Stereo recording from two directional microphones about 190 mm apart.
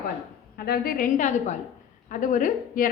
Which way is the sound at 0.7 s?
50° left (ahead or behind).